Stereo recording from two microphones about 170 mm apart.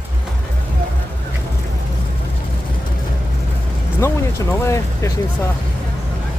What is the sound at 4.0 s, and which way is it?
Speech, 15° left (ahead or behind).